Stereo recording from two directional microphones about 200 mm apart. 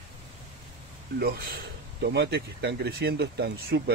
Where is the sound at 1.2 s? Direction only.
50° right (ahead or behind).